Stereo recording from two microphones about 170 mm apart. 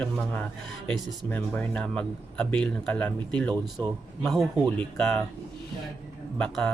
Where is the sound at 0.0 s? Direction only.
10° left (ahead or behind).